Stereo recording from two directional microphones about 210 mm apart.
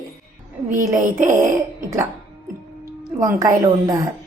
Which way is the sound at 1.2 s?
15° right (ahead or behind).